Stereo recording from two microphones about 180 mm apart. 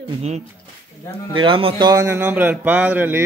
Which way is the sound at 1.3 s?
30° right (ahead or behind).